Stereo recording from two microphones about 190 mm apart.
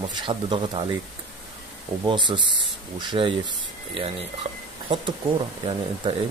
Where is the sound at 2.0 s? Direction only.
25° right (ahead or behind).